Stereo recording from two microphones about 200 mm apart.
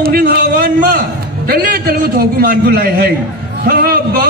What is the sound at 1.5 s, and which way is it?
A man's voice, 50° right (ahead or behind).